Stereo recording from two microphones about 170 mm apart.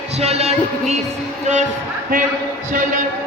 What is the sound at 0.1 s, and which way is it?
Music, 40° right (ahead or behind).